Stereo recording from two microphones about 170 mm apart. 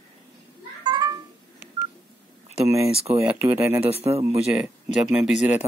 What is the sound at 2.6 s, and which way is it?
Speech, 15° right (ahead or behind).